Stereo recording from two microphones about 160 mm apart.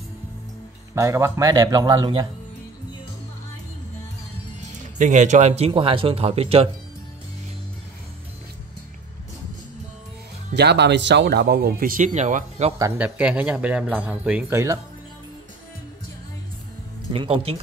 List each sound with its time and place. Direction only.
0.9 s a man's voice: 15° right (ahead or behind)
4.9 s speech: 50° right (ahead or behind)
10.5 s speech: 90° right; by 12.7 s 50° right (ahead or behind)
12.7 s a man's voice: 20° right (ahead or behind)
13.0 s speech: 10° right (ahead or behind)
17.1 s speech: 35° right (ahead or behind)